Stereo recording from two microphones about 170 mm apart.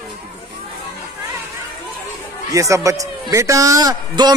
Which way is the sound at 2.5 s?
20° right (ahead or behind).